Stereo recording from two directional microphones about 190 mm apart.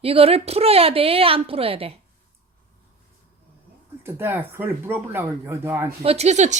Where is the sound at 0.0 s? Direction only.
30° right (ahead or behind).